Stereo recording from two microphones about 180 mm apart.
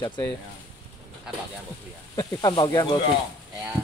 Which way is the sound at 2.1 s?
25° left (ahead or behind).